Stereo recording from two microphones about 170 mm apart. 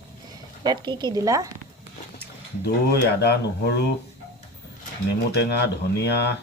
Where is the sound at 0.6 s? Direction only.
25° right (ahead or behind).